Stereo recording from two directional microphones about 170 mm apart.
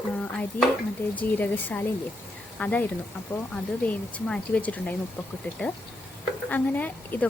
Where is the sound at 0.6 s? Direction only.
10° left (ahead or behind).